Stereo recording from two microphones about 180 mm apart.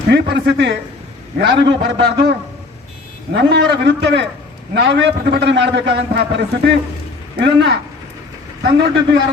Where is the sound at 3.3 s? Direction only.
75° right (ahead or behind).